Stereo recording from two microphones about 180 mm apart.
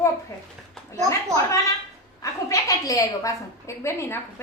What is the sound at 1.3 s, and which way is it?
Speech, 15° right (ahead or behind).